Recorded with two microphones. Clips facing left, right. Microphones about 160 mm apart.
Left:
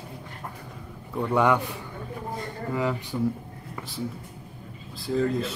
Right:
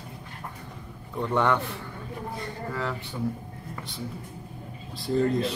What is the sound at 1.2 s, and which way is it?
Speech, 10° left (ahead or behind).